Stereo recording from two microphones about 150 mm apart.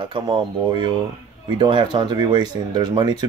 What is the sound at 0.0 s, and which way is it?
Speech, 35° right (ahead or behind).